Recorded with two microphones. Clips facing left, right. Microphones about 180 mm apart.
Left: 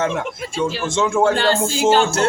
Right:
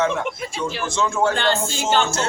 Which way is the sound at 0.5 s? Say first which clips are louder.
Left 6 dB; 25° left (ahead or behind).